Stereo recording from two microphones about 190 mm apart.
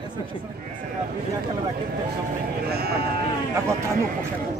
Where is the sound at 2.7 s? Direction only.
55° right (ahead or behind).